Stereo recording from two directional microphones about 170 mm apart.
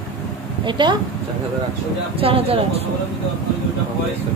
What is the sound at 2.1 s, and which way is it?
Speech, 35° right (ahead or behind).